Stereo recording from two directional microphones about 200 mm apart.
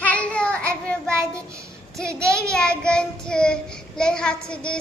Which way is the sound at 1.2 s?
15° right (ahead or behind).